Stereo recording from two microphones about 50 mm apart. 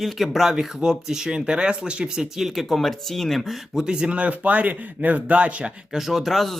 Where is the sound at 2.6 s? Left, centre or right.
Centre.